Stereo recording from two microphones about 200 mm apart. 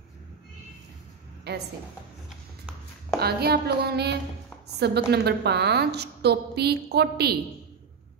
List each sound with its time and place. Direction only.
1.5 s a woman's voice: 55° right (ahead or behind)
2.2 s a sound: centre (ahead or behind)
3.2 s a woman's voice: 50° right (ahead or behind)